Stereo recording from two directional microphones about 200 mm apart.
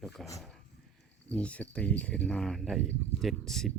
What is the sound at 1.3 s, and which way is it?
Speech, 5° left (ahead or behind).